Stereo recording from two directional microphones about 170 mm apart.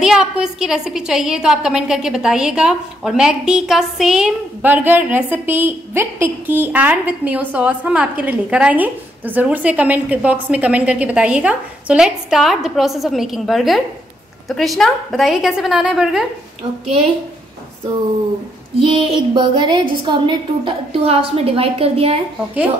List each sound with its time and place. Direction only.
0.0 s a woman's voice: 5° right (ahead or behind)
18.8 s a woman's voice: 30° right (ahead or behind)